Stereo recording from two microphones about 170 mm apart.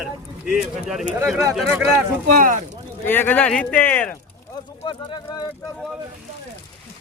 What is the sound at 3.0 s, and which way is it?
Speech, 10° left (ahead or behind).